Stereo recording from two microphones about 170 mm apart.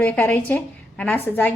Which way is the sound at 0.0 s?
10° left (ahead or behind).